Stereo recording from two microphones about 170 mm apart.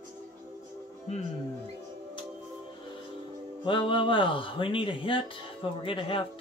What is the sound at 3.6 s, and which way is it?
Speech, 30° left (ahead or behind).